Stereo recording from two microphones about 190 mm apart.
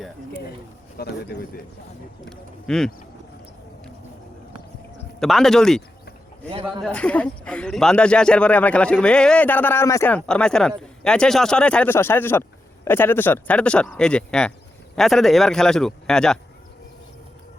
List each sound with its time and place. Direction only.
0.9 s speech: 55° left (ahead or behind)
2.6 s speech: centre (ahead or behind)
5.2 s speech: centre (ahead or behind)
6.8 s speech: 5° left (ahead or behind)